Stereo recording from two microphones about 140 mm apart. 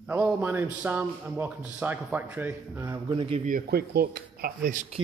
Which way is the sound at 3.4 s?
85° right.